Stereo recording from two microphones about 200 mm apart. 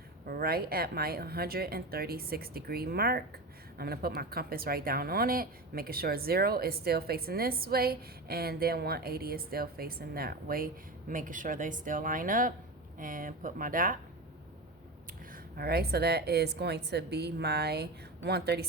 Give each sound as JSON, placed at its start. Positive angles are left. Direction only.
{"t": 0.3, "sound": "speech", "side_deg": -50}
{"t": 15.3, "sound": "a woman's voice", "side_deg": -50}